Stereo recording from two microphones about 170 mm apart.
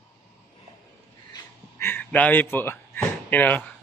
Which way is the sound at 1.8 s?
10° left (ahead or behind).